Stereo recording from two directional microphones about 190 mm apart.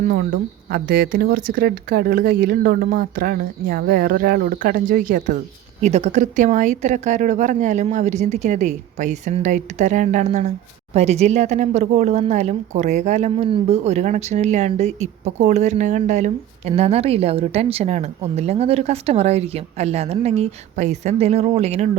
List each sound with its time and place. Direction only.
0.0 s speech: 45° right (ahead or behind)